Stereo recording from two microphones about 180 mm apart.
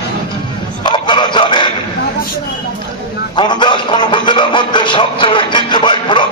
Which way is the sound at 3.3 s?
25° left (ahead or behind).